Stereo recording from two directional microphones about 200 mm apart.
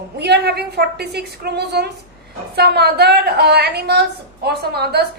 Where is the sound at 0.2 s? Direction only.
55° right (ahead or behind).